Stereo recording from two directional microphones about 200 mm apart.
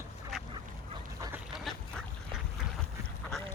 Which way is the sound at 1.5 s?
Centre (ahead or behind).